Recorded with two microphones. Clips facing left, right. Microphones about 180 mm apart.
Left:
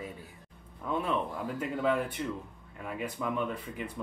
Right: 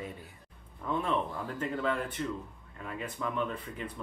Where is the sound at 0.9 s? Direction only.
10° left (ahead or behind).